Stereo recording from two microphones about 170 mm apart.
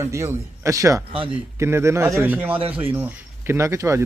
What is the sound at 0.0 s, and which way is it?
Speech, 15° right (ahead or behind).